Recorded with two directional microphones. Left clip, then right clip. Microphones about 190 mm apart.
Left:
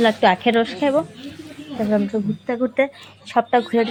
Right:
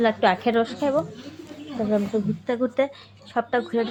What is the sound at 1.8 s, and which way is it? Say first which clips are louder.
Speech: left 3 dB; 5° left (ahead or behind).